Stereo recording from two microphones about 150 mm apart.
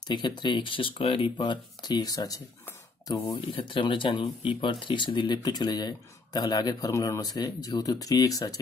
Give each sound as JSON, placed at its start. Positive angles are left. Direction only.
{"t": 0.1, "sound": "speech", "side_deg": 30}
{"t": 3.3, "sound": "speech", "side_deg": 35}